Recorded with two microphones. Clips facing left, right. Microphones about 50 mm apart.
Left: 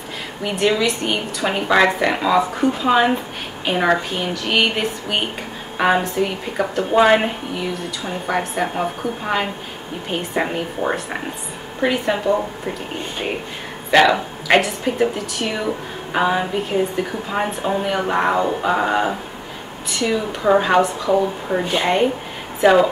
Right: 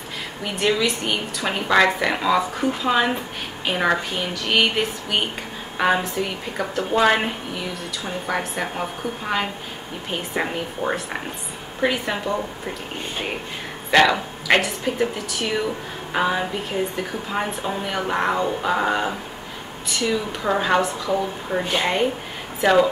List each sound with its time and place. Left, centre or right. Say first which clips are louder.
0.4 s a woman's voice: left 3 dB; centre
13.8 s a woman's voice: left 3 dB; centre